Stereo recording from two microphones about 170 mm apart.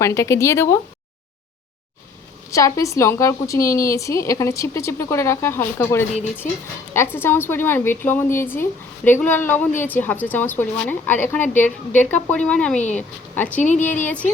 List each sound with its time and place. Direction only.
0.0 s a woman's voice: 15° left (ahead or behind)
2.5 s a woman's voice: 20° left (ahead or behind)
12.7 s speech: 45° left (ahead or behind)
13.3 s a woman's voice: 10° left (ahead or behind)
13.6 s speech: 45° left (ahead or behind)
14.0 s a woman's voice: 10° left (ahead or behind)